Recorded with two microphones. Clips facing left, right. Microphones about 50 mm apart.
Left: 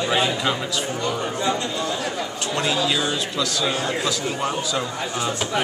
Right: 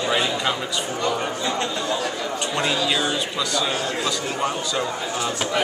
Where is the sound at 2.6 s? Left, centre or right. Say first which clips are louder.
Left 1 dB; centre.